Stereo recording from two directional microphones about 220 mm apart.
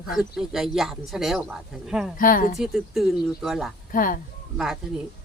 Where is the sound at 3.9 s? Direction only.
40° left (ahead or behind).